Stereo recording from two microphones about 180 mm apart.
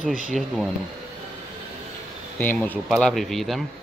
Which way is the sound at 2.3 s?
10° left (ahead or behind).